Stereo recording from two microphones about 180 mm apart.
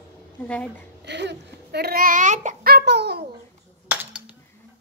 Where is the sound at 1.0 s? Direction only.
70° right (ahead or behind); by 2.5 s 45° right (ahead or behind).